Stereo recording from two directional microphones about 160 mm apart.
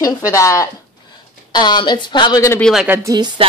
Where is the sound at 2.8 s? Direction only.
10° right (ahead or behind).